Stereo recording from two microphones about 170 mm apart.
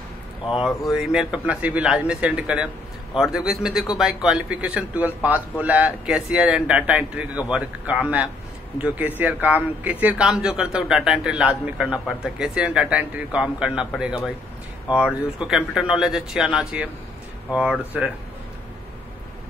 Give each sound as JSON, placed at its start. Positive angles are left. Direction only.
{"t": 0.5, "sound": "a man's voice", "side_deg": 0}